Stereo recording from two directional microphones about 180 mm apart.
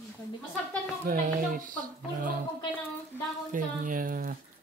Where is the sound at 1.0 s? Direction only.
50° right (ahead or behind).